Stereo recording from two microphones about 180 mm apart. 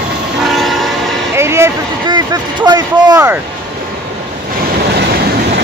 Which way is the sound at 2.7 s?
20° right (ahead or behind).